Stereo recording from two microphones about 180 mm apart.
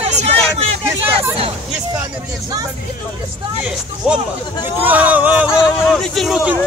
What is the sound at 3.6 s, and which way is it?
Speech, 5° right (ahead or behind).